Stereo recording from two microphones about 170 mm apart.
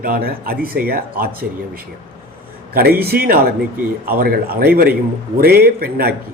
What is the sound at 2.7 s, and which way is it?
A man's voice, 65° right (ahead or behind).